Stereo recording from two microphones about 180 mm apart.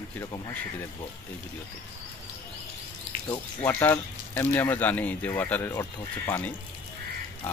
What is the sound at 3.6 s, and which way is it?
Speech, 15° left (ahead or behind).